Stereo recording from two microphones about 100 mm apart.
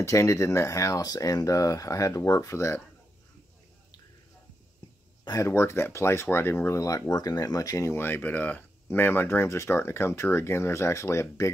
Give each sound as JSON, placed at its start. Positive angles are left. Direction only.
{"t": 0.0, "sound": "speech", "side_deg": 30}
{"t": 5.4, "sound": "speech", "side_deg": 30}